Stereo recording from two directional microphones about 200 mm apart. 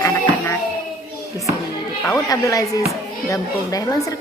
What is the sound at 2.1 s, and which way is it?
A woman's voice, 15° left (ahead or behind).